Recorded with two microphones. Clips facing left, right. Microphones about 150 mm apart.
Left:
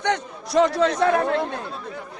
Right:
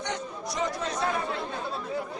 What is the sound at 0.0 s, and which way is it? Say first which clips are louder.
A man's voice: left 8 dB; 70° left (ahead or behind).